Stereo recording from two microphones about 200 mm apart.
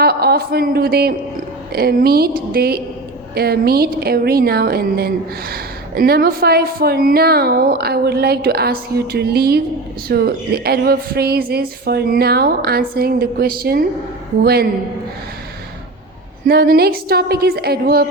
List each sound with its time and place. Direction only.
0.0 s a man's voice: 50° right (ahead or behind)
16.5 s speech: 50° right (ahead or behind)